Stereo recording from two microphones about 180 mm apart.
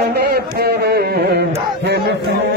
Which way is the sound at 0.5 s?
65° right (ahead or behind).